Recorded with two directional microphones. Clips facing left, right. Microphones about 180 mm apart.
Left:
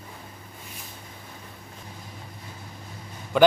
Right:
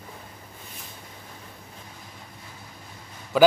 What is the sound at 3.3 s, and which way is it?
Speech, 5° right (ahead or behind).